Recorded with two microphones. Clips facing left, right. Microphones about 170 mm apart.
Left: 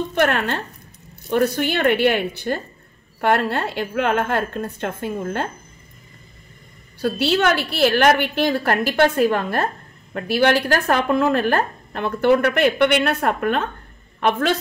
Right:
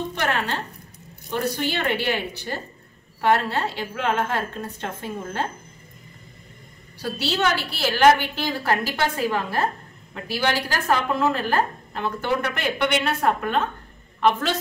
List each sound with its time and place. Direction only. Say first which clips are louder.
0.1 s speech: left 6 dB; 55° left (ahead or behind)
7.0 s speech: left 6 dB; 55° left (ahead or behind)